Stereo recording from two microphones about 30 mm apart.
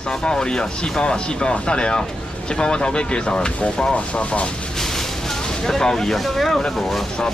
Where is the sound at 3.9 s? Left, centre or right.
Left.